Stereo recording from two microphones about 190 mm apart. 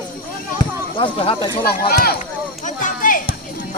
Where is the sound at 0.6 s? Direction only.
25° left (ahead or behind).